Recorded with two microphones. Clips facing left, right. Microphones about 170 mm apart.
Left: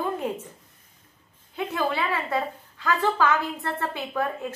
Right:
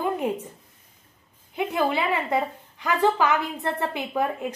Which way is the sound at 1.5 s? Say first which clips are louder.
Right 3 dB; 15° right (ahead or behind).